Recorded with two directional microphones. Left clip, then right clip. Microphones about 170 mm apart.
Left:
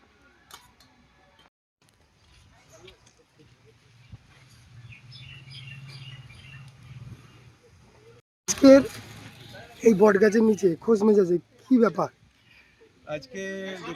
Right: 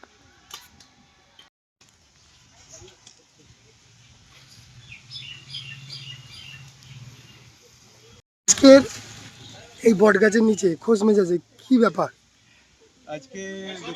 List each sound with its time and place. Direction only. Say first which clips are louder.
8.4 s a sound: right 4 dB; centre (ahead or behind)
9.8 s speech: right 2 dB; centre (ahead or behind)
13.3 s speech: left 1 dB; 5° left (ahead or behind)